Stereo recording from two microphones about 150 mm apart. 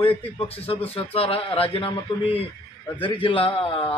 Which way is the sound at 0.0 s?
40° left (ahead or behind).